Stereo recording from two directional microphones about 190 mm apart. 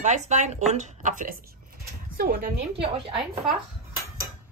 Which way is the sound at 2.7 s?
30° right (ahead or behind).